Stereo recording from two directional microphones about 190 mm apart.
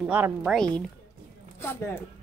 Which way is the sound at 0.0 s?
10° right (ahead or behind).